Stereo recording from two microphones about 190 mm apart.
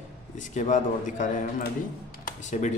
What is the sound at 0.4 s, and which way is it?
Speech, 40° left (ahead or behind).